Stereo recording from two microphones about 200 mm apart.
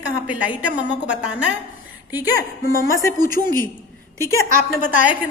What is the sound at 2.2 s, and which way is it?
Speech, 20° left (ahead or behind).